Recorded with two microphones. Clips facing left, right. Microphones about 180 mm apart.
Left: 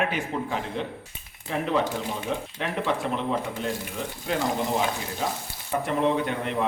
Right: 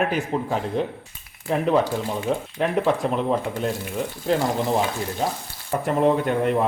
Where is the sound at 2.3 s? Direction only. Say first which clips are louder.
Right 5 dB; 40° right (ahead or behind).